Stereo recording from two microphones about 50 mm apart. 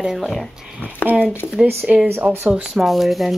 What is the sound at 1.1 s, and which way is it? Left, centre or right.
Speech, right.